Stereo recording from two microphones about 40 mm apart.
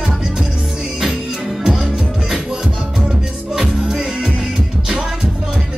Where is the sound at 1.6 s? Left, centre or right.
Centre.